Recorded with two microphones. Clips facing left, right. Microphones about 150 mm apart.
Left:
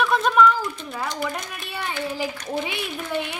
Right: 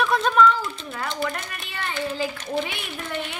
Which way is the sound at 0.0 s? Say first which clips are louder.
Left 1 dB; 5° left (ahead or behind).